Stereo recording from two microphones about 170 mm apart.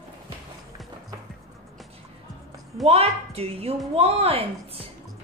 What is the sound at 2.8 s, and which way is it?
A woman's voice, 35° right (ahead or behind).